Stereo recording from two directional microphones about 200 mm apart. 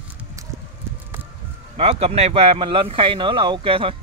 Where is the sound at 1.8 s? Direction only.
30° right (ahead or behind).